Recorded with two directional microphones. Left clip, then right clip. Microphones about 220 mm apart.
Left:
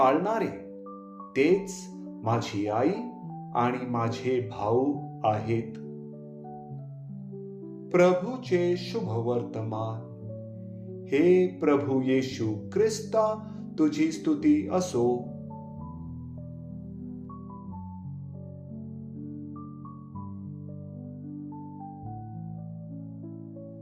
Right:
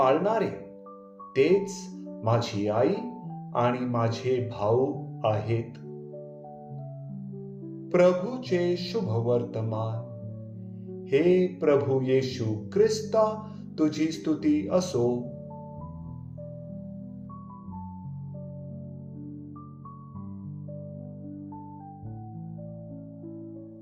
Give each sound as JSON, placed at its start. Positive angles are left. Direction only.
{"t": 0.0, "sound": "speech", "side_deg": 20}
{"t": 2.2, "sound": "speech", "side_deg": 20}
{"t": 7.9, "sound": "speech", "side_deg": 20}
{"t": 11.1, "sound": "speech", "side_deg": 20}